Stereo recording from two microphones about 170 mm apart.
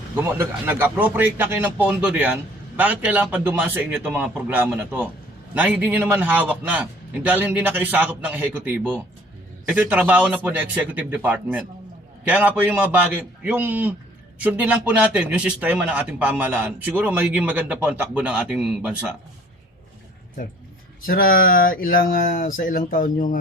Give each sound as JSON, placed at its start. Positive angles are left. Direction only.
{"t": 0.2, "sound": "a man's voice", "side_deg": -10}
{"t": 21.1, "sound": "speech", "side_deg": 60}